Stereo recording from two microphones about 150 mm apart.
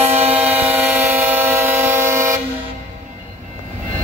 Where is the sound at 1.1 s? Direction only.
10° right (ahead or behind).